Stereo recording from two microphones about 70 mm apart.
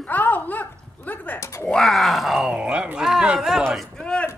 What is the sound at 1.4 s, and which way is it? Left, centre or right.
Speech, left.